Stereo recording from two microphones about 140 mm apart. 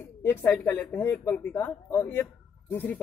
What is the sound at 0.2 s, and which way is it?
A man's voice, 15° left (ahead or behind).